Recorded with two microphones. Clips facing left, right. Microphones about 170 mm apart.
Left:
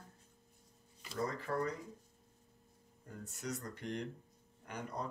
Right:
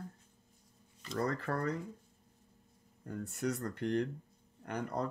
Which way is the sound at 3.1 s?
60° right (ahead or behind).